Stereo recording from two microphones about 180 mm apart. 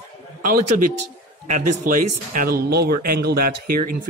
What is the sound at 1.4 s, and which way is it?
Speech, 45° right (ahead or behind).